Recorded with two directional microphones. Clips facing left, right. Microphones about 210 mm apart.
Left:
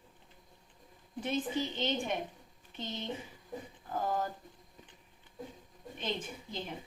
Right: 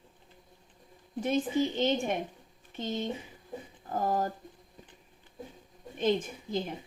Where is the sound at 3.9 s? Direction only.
40° right (ahead or behind).